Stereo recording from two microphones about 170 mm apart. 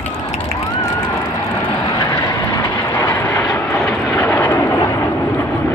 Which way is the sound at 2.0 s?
20° left (ahead or behind).